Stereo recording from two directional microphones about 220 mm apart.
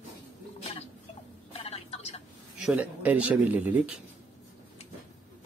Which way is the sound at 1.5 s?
25° left (ahead or behind).